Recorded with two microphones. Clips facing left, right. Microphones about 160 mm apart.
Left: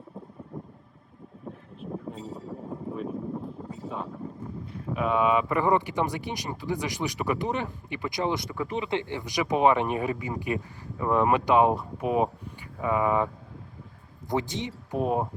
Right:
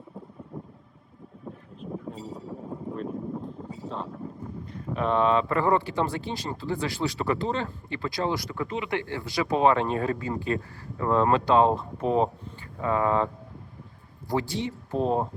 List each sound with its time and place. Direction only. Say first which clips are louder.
0.5 s vehicle: even; centre (ahead or behind)
1.7 s vehicle: even; 5° left (ahead or behind)
2.1 s a sound: even; centre (ahead or behind)
4.7 s speech: right 1 dB; 5° left (ahead or behind)
8.8 s speech: even; 20° left (ahead or behind)